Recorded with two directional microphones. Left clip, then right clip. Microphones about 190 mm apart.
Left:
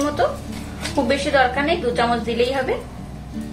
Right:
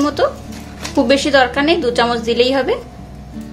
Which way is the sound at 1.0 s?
55° right (ahead or behind).